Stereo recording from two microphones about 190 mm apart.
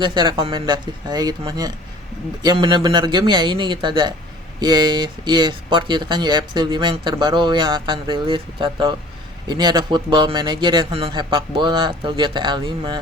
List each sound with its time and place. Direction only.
0.0 s speech: 25° right (ahead or behind)